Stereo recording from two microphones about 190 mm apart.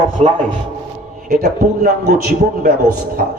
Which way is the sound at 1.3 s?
50° right (ahead or behind).